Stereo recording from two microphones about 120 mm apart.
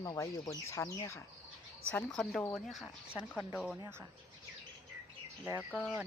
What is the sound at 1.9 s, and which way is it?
Speech, 5° left (ahead or behind).